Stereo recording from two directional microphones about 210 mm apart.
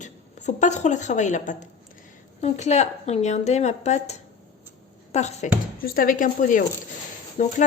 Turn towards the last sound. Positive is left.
turn(degrees=40)  # may be behind; listen again after turning